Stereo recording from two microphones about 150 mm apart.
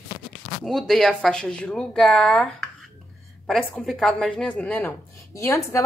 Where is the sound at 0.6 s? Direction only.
Centre (ahead or behind).